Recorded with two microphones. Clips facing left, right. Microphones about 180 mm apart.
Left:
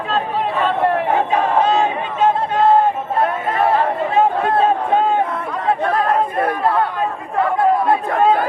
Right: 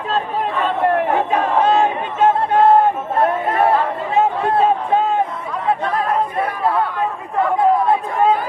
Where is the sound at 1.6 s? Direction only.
60° right (ahead or behind).